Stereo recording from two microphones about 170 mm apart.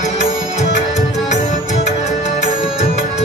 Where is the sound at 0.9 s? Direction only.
40° left (ahead or behind).